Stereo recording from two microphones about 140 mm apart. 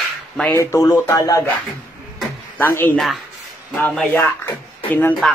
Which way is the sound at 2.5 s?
15° left (ahead or behind).